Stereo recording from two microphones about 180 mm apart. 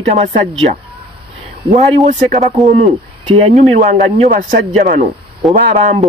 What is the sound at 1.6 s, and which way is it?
A man's voice, 35° right (ahead or behind).